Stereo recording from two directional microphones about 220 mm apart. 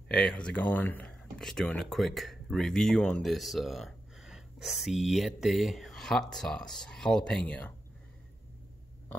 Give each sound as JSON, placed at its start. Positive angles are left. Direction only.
{"t": 0.1, "sound": "speech", "side_deg": 5}